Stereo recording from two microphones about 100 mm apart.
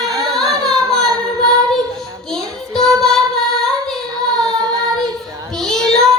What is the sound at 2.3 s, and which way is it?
Child singing, 5° left (ahead or behind).